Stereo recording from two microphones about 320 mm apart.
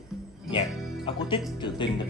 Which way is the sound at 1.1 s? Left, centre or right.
Centre.